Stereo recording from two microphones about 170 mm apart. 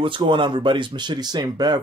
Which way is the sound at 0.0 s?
30° right (ahead or behind).